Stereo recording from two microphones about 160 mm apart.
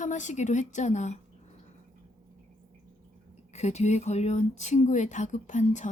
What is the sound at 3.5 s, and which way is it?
A woman's voice, 45° left (ahead or behind).